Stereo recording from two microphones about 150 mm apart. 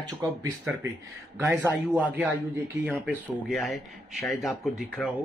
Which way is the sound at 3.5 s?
Centre (ahead or behind).